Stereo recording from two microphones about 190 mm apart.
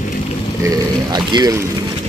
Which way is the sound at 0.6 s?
20° right (ahead or behind).